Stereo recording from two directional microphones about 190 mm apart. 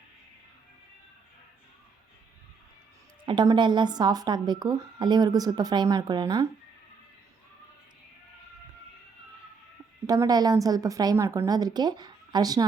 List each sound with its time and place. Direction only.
3.2 s a woman's voice: 25° right (ahead or behind)
10.1 s a woman's voice: 20° right (ahead or behind)